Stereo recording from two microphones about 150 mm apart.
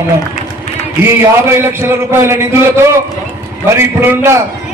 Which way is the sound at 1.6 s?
15° right (ahead or behind).